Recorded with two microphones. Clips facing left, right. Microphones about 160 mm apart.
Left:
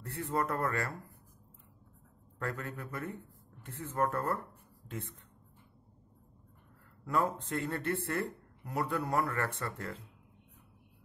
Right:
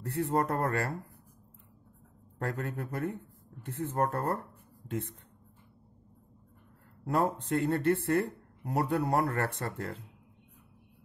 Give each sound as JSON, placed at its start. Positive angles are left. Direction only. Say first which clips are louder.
{"t": 0.0, "sound": "speech", "louder": "right 5 dB", "side_deg": -35}
{"t": 2.3, "sound": "a man's voice", "louder": "right 4 dB", "side_deg": -35}
{"t": 7.1, "sound": "speech", "louder": "right 3 dB", "side_deg": -40}